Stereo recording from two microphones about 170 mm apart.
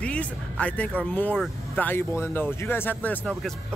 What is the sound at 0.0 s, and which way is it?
Speech, 5° left (ahead or behind).